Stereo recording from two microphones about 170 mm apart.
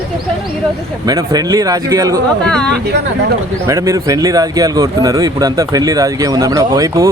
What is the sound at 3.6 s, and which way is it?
Speech, 15° right (ahead or behind).